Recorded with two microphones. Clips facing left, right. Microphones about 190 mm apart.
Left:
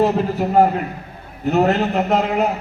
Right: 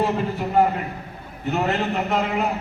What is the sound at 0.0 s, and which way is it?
A man's voice, 40° left (ahead or behind).